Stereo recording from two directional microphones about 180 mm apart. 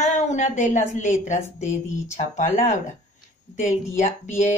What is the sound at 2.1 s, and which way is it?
A woman's voice, 40° left (ahead or behind).